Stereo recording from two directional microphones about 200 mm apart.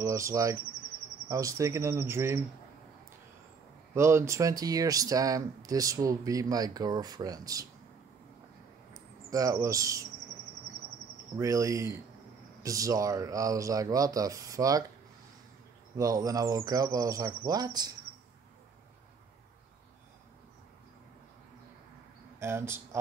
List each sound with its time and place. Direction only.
0.0 s speech: 15° right (ahead or behind)
3.9 s speech: 15° right (ahead or behind)
8.9 s speech: 15° right (ahead or behind)
11.3 s speech: 15° right (ahead or behind)
16.0 s speech: 20° right (ahead or behind)
22.4 s speech: 10° right (ahead or behind)